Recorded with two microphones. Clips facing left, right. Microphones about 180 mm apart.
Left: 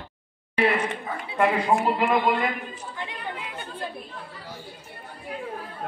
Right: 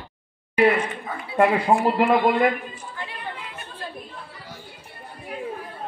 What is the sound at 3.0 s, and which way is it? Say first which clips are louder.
Speech: even; 20° left (ahead or behind).